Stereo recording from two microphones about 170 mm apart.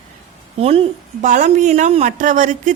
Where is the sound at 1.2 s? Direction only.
45° right (ahead or behind).